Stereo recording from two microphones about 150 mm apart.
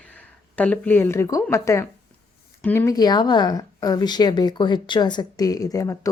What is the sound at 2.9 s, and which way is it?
Speech, 30° left (ahead or behind).